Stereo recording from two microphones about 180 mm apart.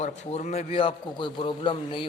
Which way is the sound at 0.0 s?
40° left (ahead or behind).